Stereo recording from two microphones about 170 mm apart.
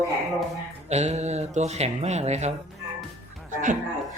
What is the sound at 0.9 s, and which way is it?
Speech, 40° right (ahead or behind).